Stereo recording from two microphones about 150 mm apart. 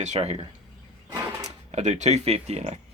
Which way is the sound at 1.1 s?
25° right (ahead or behind).